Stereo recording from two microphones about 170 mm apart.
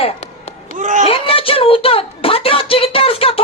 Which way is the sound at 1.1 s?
35° left (ahead or behind).